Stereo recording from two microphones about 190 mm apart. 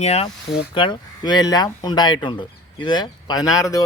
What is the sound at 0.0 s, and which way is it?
Speech, 35° left (ahead or behind).